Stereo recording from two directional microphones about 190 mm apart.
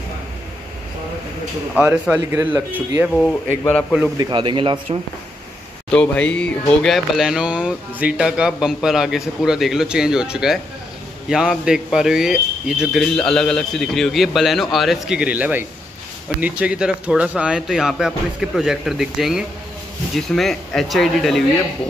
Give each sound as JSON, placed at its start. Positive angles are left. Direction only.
{"t": 1.8, "sound": "speech", "side_deg": -10}
{"t": 3.2, "sound": "speech", "side_deg": 5}
{"t": 4.2, "sound": "a man's voice", "side_deg": -25}
{"t": 5.9, "sound": "speech", "side_deg": 5}